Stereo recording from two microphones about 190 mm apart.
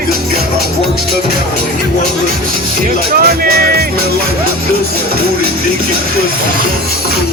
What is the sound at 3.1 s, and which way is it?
Music, 50° right (ahead or behind).